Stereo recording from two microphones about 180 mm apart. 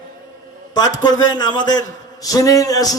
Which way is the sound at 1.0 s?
20° left (ahead or behind).